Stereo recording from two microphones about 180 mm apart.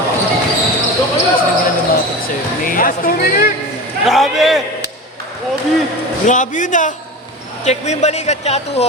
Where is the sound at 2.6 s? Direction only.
50° left (ahead or behind).